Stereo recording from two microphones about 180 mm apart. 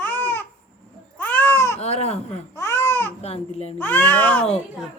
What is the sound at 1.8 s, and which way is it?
Baby cry, 35° left (ahead or behind).